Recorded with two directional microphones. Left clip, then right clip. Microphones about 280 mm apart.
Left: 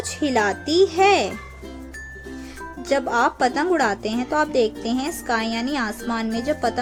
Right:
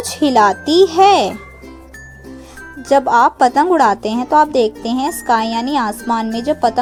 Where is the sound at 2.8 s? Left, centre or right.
Centre.